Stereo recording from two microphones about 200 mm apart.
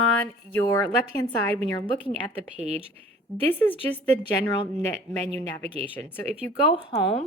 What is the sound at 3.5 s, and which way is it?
Speech, 10° left (ahead or behind).